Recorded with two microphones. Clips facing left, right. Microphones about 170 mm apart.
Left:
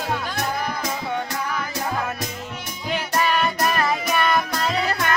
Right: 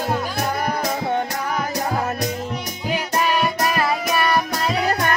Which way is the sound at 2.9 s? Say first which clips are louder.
Right 1 dB; 10° right (ahead or behind).